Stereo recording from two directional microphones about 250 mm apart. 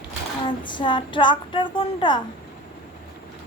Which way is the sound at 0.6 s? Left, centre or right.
Centre.